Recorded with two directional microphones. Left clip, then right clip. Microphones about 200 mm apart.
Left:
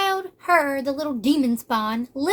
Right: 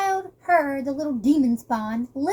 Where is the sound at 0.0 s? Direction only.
25° left (ahead or behind).